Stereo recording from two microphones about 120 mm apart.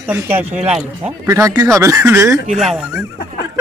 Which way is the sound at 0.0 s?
15° right (ahead or behind).